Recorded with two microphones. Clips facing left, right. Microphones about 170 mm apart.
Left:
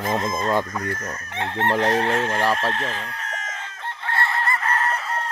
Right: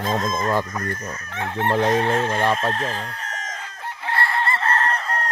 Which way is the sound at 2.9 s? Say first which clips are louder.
Right 1 dB; 35° right (ahead or behind).